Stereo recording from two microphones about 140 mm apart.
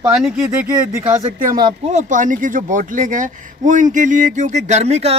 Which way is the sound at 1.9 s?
60° right (ahead or behind).